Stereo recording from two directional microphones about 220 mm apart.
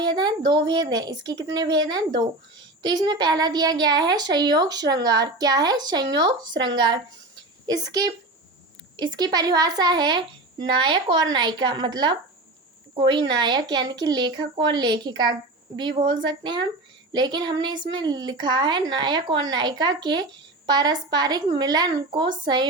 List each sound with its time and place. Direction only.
0.0 s a woman's voice: 20° right (ahead or behind)